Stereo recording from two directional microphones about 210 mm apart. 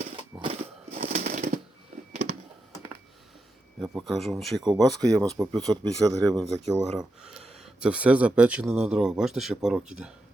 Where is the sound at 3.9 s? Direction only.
Centre (ahead or behind).